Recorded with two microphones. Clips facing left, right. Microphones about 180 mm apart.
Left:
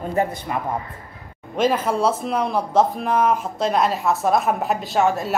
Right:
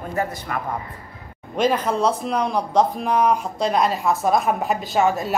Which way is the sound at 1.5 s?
5° left (ahead or behind).